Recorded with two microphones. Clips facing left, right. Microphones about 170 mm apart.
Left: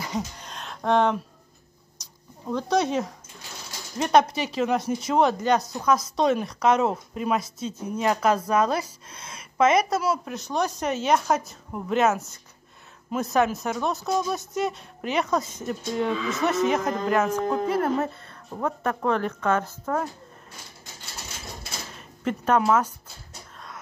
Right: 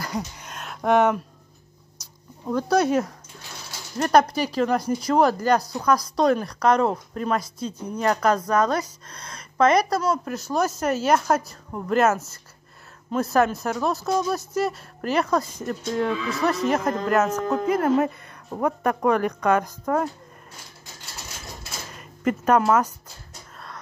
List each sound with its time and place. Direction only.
0.0 s a sound: centre (ahead or behind)
2.5 s a woman's voice: centre (ahead or behind)
22.2 s a woman's voice: 5° right (ahead or behind)